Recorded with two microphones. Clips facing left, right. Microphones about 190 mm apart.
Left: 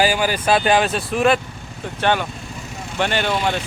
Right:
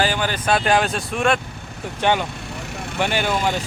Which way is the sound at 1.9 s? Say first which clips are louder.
Even; 15° right (ahead or behind).